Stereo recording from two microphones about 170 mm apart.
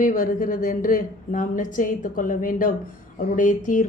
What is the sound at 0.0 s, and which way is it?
A woman's voice, 50° left (ahead or behind).